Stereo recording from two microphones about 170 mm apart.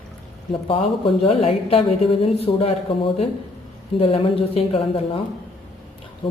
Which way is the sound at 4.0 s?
35° left (ahead or behind).